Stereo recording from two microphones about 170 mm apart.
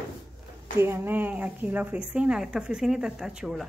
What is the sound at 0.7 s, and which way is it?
A woman's voice, 15° right (ahead or behind).